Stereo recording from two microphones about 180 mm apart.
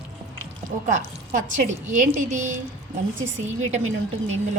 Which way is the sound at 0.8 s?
45° right (ahead or behind).